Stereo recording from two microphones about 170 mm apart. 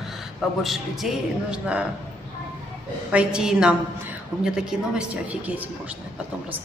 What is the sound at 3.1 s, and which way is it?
A woman's voice, 5° right (ahead or behind).